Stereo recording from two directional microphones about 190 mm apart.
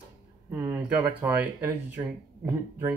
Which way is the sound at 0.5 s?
15° right (ahead or behind).